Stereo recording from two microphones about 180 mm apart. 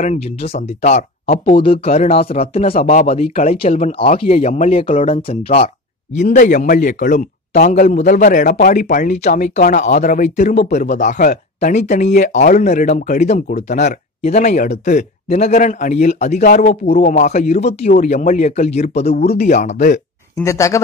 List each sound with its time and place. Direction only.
0.0 s speech: 35° left (ahead or behind)
6.1 s speech: 45° left (ahead or behind)
17.1 s speech: 40° left (ahead or behind)
20.3 s speech: 15° left (ahead or behind)